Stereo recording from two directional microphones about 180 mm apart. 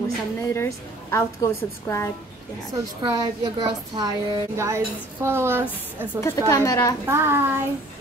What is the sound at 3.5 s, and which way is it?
A woman's voice, 20° right (ahead or behind).